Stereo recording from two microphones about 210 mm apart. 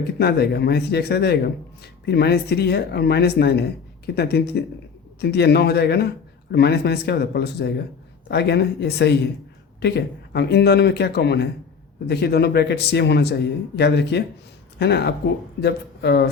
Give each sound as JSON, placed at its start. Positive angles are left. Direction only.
{"t": 0.2, "sound": "speech", "side_deg": 50}